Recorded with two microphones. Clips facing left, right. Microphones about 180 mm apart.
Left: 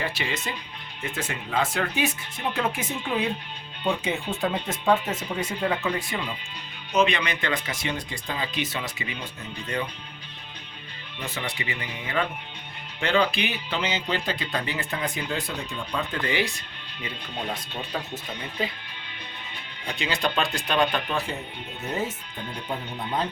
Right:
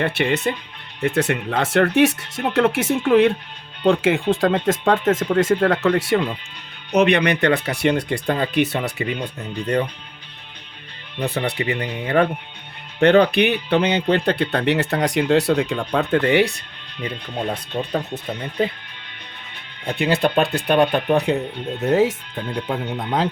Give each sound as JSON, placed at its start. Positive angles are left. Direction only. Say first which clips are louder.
{"t": 0.0, "sound": "speech", "louder": "right 10 dB", "side_deg": -65}
{"t": 3.8, "sound": "speech", "louder": "right 10 dB", "side_deg": -90}
{"t": 11.2, "sound": "speech", "louder": "right 10 dB", "side_deg": -60}
{"t": 17.7, "sound": "speech", "louder": "right 10 dB", "side_deg": -40}
{"t": 20.0, "sound": "speech", "louder": "right 8 dB", "side_deg": -60}
{"t": 21.8, "sound": "speech", "louder": "right 13 dB", "side_deg": -90}